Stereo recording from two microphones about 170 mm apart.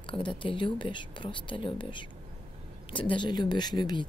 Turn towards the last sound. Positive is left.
turn(degrees=25)  # may be behind; listen again after turning